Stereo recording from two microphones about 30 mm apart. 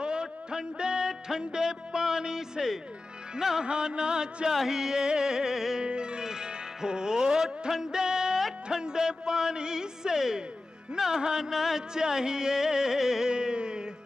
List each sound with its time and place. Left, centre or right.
0.0 s music: right
3.6 s music: right
4.5 s music: centre
5.8 s music: right
11.5 s music: centre
11.9 s music: right
13.3 s a sound: right